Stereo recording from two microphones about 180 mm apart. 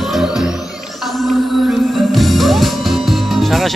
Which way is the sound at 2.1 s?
Centre (ahead or behind).